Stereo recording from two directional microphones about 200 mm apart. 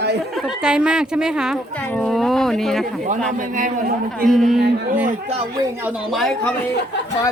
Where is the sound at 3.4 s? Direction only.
40° right (ahead or behind).